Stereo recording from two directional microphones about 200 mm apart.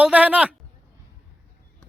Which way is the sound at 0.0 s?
5° right (ahead or behind).